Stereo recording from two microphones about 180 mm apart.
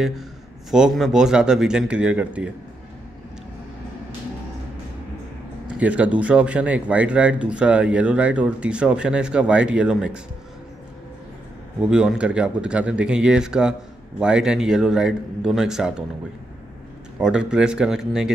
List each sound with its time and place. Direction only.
0.7 s a man's voice: centre (ahead or behind)
5.8 s speech: 10° right (ahead or behind)
11.8 s a man's voice: 5° right (ahead or behind)
17.2 s a man's voice: 5° right (ahead or behind)